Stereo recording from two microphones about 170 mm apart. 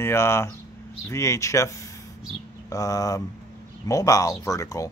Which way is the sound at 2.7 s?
20° left (ahead or behind).